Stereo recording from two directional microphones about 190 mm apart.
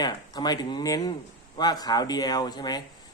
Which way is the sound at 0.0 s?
20° left (ahead or behind).